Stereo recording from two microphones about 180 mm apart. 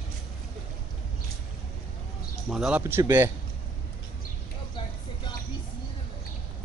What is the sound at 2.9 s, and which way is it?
Speech, 15° right (ahead or behind).